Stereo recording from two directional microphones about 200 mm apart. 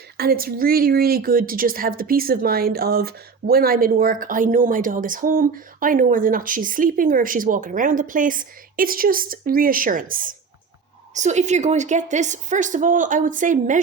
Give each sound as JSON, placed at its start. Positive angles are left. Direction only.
{"t": 0.2, "sound": "a woman's voice", "side_deg": -45}